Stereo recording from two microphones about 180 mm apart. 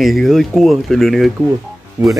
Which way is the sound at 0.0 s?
Centre (ahead or behind).